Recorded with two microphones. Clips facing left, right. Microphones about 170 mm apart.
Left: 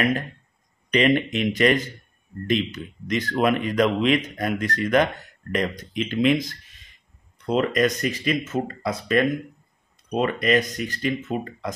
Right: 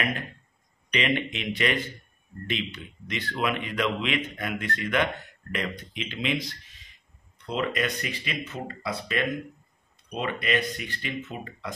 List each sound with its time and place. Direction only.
0.9 s speech: 45° left (ahead or behind)